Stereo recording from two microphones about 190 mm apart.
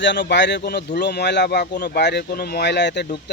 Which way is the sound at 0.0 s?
65° left (ahead or behind).